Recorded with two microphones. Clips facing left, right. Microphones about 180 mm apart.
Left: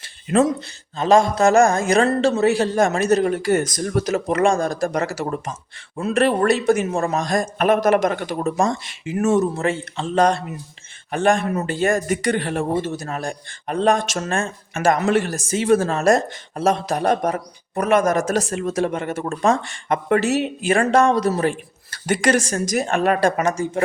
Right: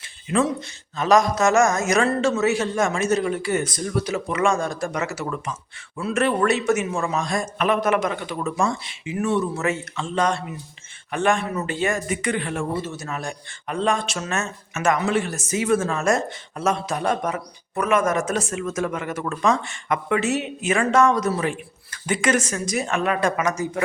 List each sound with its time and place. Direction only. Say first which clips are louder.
0.3 s speech: left 4 dB; 45° left (ahead or behind)
9.6 s speech: left 2 dB; 30° left (ahead or behind)
14.3 s speech: left 4 dB; 30° left (ahead or behind)